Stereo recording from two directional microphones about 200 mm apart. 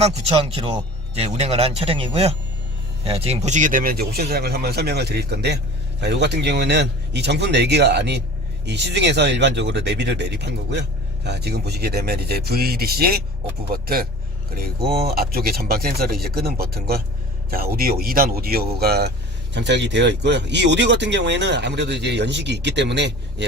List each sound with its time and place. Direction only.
0.0 s a man's voice: 30° right (ahead or behind); by 23.1 s 60° right (ahead or behind)